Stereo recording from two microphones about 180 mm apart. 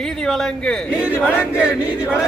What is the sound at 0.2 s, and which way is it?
Speech, 5° left (ahead or behind).